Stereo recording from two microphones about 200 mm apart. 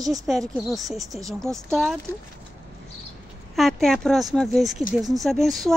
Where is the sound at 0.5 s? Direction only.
Centre (ahead or behind).